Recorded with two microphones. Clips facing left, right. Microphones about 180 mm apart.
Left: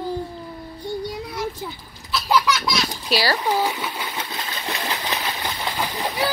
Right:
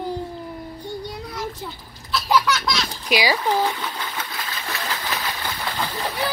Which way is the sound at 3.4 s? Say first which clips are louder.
Even; 10° left (ahead or behind).